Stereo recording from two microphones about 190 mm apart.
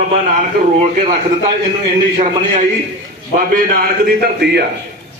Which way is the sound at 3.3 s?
50° right (ahead or behind).